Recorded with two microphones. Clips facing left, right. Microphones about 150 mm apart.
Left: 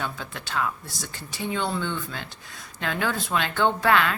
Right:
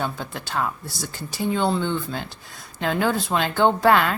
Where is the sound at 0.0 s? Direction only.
35° right (ahead or behind).